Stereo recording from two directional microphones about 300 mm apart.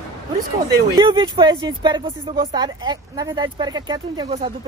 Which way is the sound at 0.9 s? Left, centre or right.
Centre.